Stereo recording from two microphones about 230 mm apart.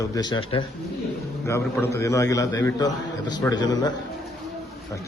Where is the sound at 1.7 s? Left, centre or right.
Centre.